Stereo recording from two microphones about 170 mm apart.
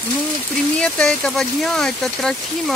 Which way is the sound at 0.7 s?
5° left (ahead or behind).